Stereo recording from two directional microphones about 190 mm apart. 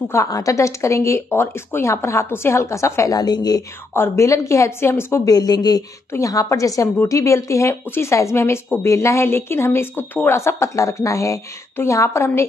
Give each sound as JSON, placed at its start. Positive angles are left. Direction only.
{"t": 0.1, "sound": "speech", "side_deg": 15}